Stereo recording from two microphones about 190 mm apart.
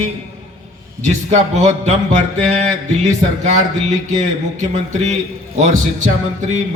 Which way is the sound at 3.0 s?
40° right (ahead or behind).